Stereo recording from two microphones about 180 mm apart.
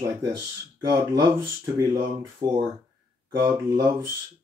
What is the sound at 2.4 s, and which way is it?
Speech, 25° right (ahead or behind).